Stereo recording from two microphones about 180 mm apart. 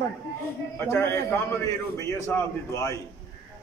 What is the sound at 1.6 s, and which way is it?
A man's voice, 15° left (ahead or behind).